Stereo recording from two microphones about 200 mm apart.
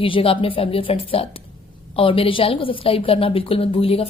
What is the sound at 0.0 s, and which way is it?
A woman's voice, 25° left (ahead or behind).